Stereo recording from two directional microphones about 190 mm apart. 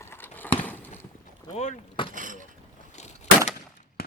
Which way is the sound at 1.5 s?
35° left (ahead or behind).